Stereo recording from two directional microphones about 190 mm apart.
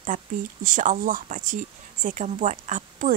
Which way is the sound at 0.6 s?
40° right (ahead or behind).